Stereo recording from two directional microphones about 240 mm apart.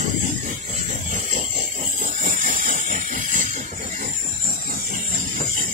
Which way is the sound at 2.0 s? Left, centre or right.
Right.